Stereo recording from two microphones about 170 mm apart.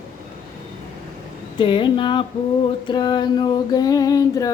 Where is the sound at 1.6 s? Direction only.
30° left (ahead or behind).